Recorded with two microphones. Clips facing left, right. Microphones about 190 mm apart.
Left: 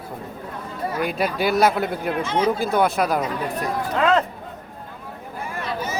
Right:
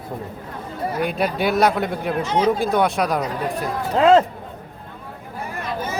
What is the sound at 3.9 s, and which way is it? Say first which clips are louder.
Speech: right 6 dB; 30° right (ahead or behind).